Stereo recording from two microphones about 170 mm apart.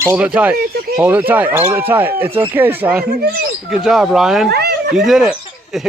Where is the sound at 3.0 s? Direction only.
70° right (ahead or behind).